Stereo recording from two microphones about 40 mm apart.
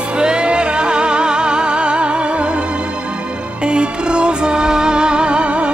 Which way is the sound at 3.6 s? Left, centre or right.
Right.